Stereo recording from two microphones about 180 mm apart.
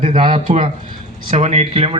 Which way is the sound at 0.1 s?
30° right (ahead or behind).